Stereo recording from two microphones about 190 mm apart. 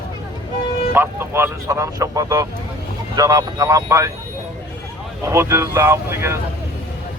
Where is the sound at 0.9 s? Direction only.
10° right (ahead or behind).